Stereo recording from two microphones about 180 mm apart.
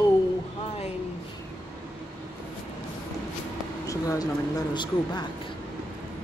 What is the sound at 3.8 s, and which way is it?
Speech, 20° left (ahead or behind).